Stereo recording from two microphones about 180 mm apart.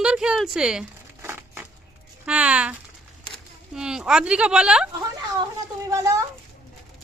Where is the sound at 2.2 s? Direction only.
5° right (ahead or behind).